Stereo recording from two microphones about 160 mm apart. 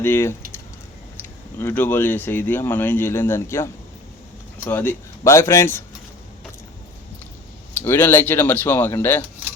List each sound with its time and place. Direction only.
0.0 s speech: 15° left (ahead or behind)
7.8 s speech: 15° left (ahead or behind)